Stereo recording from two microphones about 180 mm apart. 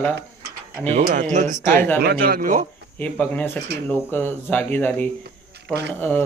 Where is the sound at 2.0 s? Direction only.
55° right (ahead or behind).